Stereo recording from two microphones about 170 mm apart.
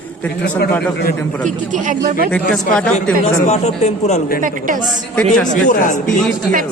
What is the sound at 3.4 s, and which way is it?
Speech, 40° left (ahead or behind).